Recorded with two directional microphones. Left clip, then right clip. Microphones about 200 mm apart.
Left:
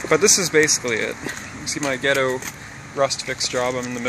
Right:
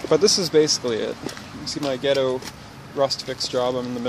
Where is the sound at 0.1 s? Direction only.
15° right (ahead or behind).